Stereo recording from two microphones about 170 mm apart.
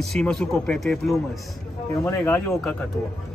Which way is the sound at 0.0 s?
5° left (ahead or behind).